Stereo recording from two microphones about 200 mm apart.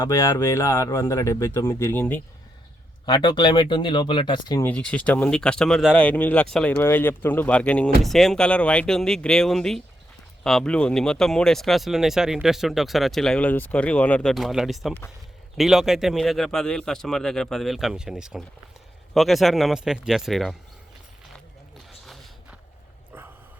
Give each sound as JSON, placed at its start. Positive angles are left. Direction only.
{"t": 0.0, "sound": "speech", "side_deg": 15}
{"t": 3.1, "sound": "speech", "side_deg": 20}
{"t": 4.6, "sound": "speech", "side_deg": 5}
{"t": 22.0, "sound": "walk", "side_deg": 0}